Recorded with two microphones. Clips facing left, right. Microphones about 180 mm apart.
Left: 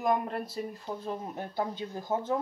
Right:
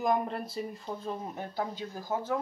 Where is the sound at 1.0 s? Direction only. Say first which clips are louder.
Even; 10° left (ahead or behind).